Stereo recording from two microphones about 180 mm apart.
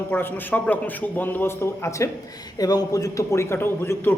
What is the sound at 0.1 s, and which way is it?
A man's voice, 10° left (ahead or behind).